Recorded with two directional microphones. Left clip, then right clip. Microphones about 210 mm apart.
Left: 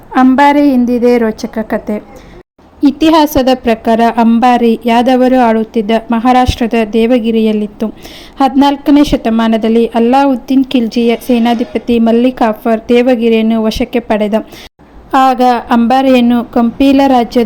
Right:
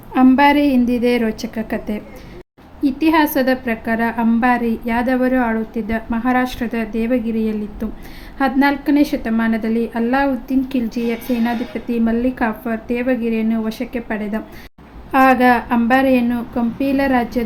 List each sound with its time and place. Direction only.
0.1 s a woman's voice: 10° left (ahead or behind)
2.8 s a woman's voice: 30° left (ahead or behind)